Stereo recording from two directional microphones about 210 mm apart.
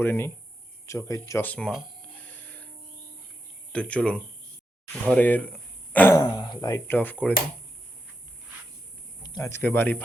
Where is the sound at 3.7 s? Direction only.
5° left (ahead or behind).